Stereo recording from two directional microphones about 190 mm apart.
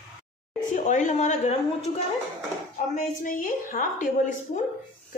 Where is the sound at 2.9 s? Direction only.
45° left (ahead or behind).